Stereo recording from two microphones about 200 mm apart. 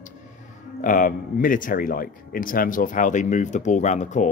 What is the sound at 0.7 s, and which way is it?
Speech, 45° left (ahead or behind).